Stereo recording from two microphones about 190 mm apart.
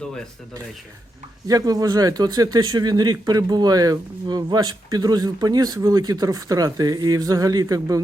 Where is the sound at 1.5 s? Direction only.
20° right (ahead or behind).